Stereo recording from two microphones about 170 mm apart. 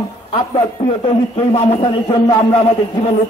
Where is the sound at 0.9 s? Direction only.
35° left (ahead or behind).